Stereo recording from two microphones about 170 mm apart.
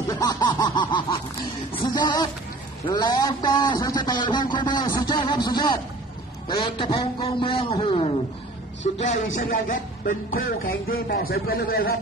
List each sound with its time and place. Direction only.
0.1 s a sound: 25° left (ahead or behind)
2.9 s a man's voice: 25° left (ahead or behind)
6.6 s speech: 30° left (ahead or behind)
8.8 s speech: 45° left (ahead or behind); by 12.0 s 65° left (ahead or behind)